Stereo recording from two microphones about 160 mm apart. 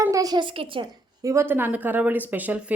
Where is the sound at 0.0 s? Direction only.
20° right (ahead or behind).